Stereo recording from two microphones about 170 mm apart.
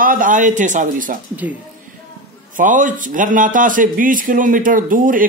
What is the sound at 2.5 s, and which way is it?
Speech, 50° right (ahead or behind).